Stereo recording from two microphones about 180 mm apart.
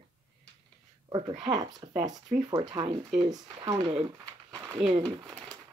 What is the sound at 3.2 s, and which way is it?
Speech, 20° right (ahead or behind).